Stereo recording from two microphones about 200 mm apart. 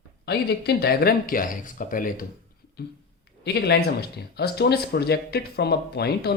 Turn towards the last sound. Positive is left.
turn(degrees=55)  # may be behind; listen again after turning